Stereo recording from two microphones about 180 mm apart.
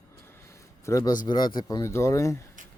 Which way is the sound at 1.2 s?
25° left (ahead or behind).